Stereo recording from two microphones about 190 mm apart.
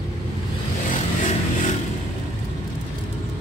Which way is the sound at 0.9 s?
40° left (ahead or behind).